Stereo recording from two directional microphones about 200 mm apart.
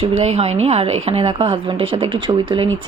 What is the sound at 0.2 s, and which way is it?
Speech, 30° right (ahead or behind).